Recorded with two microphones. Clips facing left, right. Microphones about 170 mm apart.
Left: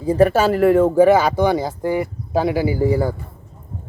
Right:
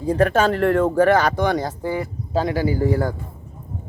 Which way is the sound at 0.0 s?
10° left (ahead or behind).